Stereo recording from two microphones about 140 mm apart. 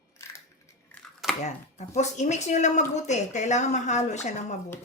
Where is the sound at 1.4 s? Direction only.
55° left (ahead or behind).